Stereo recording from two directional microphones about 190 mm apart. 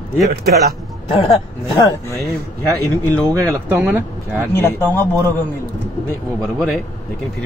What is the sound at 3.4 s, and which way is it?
Speech, 10° right (ahead or behind).